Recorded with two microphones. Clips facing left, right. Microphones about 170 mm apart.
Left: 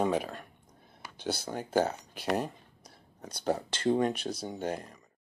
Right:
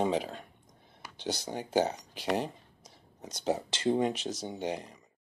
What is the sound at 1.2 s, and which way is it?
Speech, 20° right (ahead or behind).